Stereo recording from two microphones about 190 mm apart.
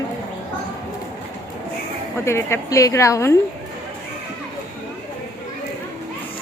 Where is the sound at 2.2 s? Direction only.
15° left (ahead or behind).